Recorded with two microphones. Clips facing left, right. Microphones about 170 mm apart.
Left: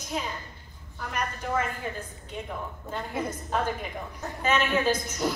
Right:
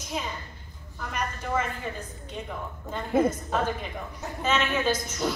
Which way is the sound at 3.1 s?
50° right (ahead or behind).